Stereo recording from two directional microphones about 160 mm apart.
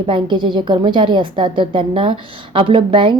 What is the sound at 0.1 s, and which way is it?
A woman's voice, 30° right (ahead or behind).